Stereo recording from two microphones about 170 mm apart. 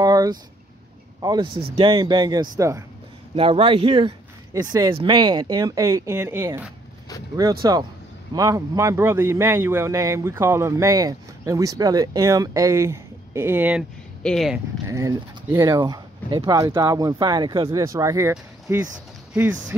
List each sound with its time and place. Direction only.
0.0 s a sound: 25° right (ahead or behind)
1.2 s speech: 25° right (ahead or behind)
3.3 s speech: 35° right (ahead or behind); by 6.6 s 15° right (ahead or behind)
8.4 s a man's voice: 20° right (ahead or behind)
14.2 s speech: centre (ahead or behind)
14.9 s a man's voice: 20° right (ahead or behind)